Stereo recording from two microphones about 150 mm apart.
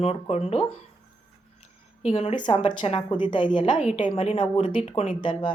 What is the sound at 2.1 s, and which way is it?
Speech, 45° left (ahead or behind).